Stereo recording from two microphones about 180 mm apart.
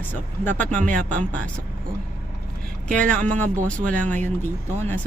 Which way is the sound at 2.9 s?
5° left (ahead or behind).